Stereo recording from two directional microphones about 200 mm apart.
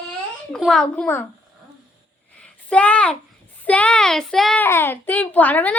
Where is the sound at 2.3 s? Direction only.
5° left (ahead or behind).